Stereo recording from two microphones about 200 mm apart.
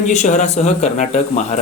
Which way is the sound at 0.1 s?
35° left (ahead or behind).